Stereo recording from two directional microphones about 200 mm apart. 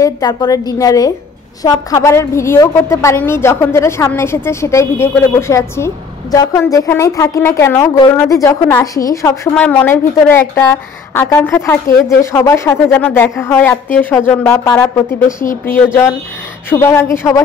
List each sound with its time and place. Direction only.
0.0 s a woman's voice: 20° left (ahead or behind)